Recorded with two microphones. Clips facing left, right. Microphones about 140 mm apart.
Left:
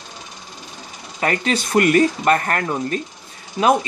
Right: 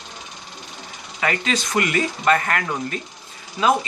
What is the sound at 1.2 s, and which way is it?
Speech, 40° left (ahead or behind).